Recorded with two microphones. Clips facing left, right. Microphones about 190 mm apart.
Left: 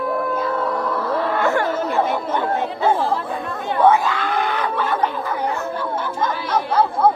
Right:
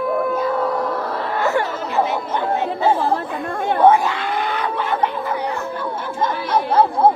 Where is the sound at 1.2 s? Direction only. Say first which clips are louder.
Left 1 dB; 50° left (ahead or behind).